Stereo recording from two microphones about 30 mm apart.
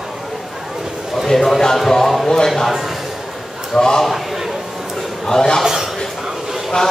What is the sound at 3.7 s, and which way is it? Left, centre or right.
Speech, centre.